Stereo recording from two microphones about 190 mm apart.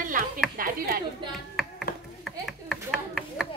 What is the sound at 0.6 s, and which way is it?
Speech, 50° right (ahead or behind).